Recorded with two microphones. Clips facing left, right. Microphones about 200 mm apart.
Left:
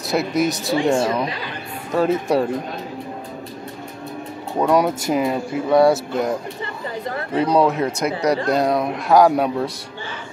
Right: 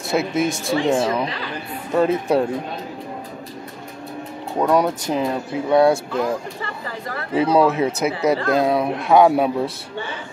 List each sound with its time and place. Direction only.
0.1 s speech: centre (ahead or behind)
2.0 s speech: centre (ahead or behind)
4.6 s speech: centre (ahead or behind)
7.3 s speech: 5° right (ahead or behind)